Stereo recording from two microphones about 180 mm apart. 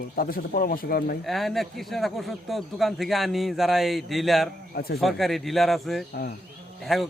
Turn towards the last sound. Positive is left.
turn(degrees=0)  # may be behind; listen again after turning